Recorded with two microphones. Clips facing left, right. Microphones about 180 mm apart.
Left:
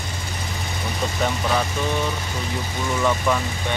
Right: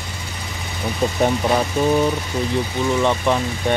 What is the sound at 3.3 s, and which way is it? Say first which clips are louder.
Speech: right 2 dB; 25° right (ahead or behind).